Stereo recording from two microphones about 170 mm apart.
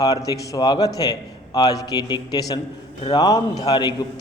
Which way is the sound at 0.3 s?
25° left (ahead or behind).